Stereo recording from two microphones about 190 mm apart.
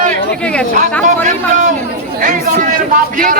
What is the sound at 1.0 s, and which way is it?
Speech, 40° right (ahead or behind).